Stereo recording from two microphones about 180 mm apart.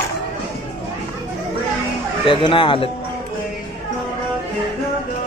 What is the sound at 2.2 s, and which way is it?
Speech, 30° left (ahead or behind).